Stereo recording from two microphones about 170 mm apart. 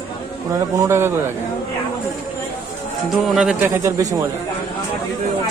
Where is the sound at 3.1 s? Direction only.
Centre (ahead or behind); by 4.0 s 15° right (ahead or behind).